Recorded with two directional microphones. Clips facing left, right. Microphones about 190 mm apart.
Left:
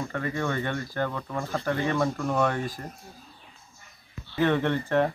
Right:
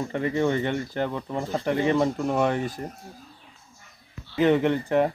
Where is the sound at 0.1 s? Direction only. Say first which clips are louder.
Right 8 dB; 20° right (ahead or behind).